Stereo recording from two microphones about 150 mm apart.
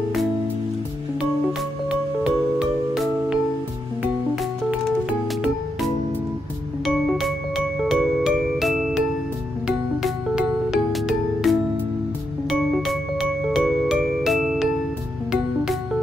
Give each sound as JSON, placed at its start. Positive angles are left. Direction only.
{"t": 2.9, "sound": "music", "side_deg": -5}
{"t": 7.1, "sound": "music", "side_deg": 0}